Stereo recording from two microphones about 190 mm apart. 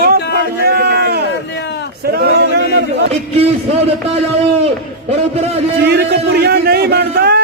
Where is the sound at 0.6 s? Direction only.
55° right (ahead or behind).